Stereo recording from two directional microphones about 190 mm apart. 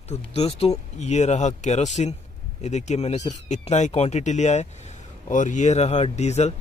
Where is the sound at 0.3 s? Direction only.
30° left (ahead or behind).